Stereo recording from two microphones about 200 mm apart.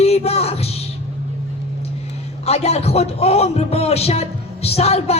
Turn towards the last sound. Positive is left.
turn(degrees=30)  # may be behind; listen again after turning